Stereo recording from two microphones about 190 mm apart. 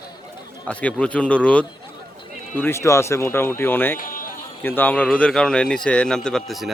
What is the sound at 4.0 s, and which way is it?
Music, 45° left (ahead or behind).